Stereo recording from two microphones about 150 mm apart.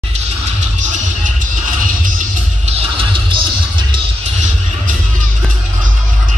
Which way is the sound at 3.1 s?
35° right (ahead or behind).